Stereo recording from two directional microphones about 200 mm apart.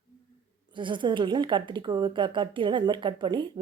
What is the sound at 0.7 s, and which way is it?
Speech, 25° right (ahead or behind).